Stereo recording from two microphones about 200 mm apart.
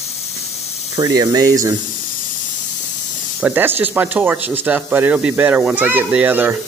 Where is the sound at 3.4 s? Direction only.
10° right (ahead or behind).